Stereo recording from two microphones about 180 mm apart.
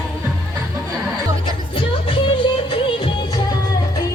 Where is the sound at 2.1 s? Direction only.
30° left (ahead or behind).